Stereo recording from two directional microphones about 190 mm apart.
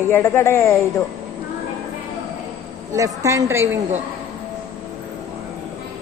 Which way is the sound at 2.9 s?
15° right (ahead or behind).